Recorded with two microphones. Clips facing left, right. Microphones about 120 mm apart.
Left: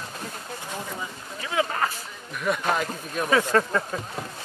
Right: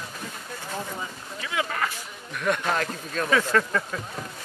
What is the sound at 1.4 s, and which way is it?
Boat, 35° left (ahead or behind).